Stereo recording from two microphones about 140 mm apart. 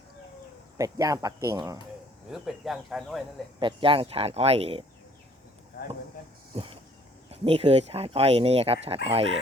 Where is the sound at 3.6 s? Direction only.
40° right (ahead or behind).